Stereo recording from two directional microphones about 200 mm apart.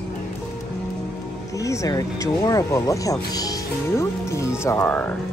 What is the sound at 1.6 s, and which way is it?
Speech, 15° left (ahead or behind).